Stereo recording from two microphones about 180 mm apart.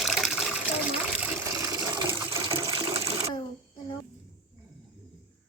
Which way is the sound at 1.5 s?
20° right (ahead or behind).